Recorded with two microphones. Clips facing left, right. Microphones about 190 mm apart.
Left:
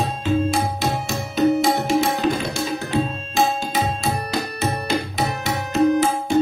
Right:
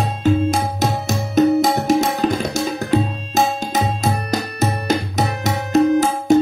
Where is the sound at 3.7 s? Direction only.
40° right (ahead or behind).